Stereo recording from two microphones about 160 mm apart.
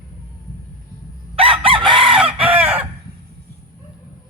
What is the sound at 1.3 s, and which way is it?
Chicken, 35° right (ahead or behind).